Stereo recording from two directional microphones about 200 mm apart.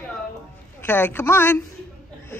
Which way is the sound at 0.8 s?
10° left (ahead or behind).